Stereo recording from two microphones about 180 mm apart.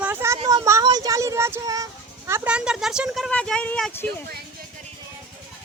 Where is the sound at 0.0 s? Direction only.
15° right (ahead or behind); by 4.0 s 5° left (ahead or behind).